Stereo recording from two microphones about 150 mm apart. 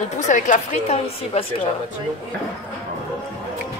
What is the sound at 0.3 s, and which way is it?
A woman's voice, 50° left (ahead or behind).